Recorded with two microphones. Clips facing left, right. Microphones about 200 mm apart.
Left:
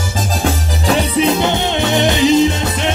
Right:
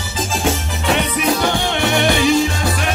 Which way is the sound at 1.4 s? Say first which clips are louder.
Left 2 dB; 20° left (ahead or behind).